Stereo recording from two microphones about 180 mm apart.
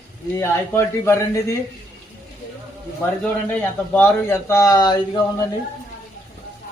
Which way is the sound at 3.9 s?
10° left (ahead or behind).